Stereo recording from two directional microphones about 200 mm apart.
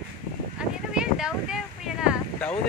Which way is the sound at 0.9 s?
5° right (ahead or behind).